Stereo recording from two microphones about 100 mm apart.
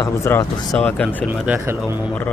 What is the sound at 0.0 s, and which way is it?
Speech, 30° left (ahead or behind).